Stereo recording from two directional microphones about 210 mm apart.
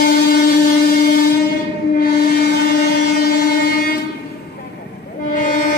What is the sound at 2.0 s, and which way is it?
Train, 50° left (ahead or behind).